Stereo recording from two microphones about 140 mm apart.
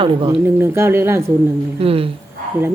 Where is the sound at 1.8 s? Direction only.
40° right (ahead or behind).